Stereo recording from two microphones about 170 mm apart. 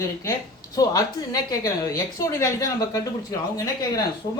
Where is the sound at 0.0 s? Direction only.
20° left (ahead or behind).